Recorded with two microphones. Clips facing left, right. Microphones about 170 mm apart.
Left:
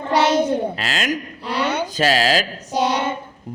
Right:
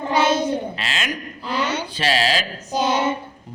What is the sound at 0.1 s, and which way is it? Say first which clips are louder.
Child singing: left 1 dB; 75° left (ahead or behind).